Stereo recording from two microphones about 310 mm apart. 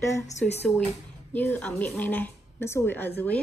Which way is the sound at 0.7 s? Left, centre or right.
Centre.